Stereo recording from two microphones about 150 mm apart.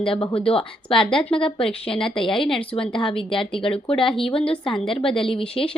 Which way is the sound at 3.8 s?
35° left (ahead or behind).